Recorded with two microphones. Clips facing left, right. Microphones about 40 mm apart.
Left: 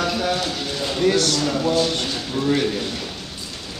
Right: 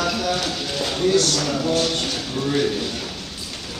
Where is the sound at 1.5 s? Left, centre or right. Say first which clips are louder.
Left 1 dB; centre.